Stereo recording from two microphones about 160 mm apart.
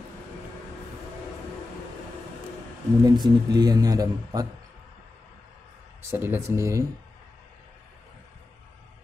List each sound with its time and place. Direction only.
3.0 s speech: 25° right (ahead or behind)
6.0 s speech: 15° right (ahead or behind)